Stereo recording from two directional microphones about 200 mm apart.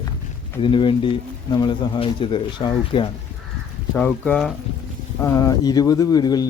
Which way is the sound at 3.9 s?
5° left (ahead or behind).